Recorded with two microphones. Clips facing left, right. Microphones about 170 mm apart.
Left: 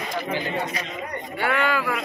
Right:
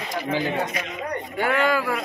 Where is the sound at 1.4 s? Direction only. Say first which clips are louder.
Right 2 dB; 40° right (ahead or behind).